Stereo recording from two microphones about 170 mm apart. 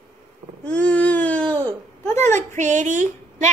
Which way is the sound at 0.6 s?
10° left (ahead or behind).